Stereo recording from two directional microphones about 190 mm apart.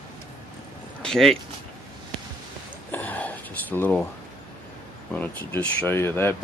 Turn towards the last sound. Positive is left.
turn(degrees=10)  # may be behind; listen again after turning